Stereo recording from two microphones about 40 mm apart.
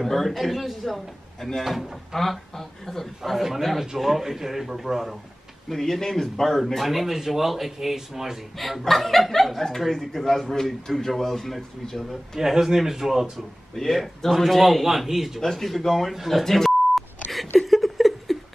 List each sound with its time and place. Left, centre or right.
0.0 s speech: centre
3.4 s a man's voice: centre
5.7 s speech: centre
8.5 s speech: centre
12.4 s a man's voice: centre
13.7 s a man's voice: centre
15.4 s speech: centre
16.1 s beep: centre
17.6 s laughter: centre